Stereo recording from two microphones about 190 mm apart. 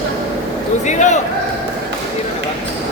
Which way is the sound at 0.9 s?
40° left (ahead or behind).